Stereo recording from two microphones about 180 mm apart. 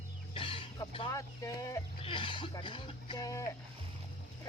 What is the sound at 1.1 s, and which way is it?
Speech, 20° left (ahead or behind).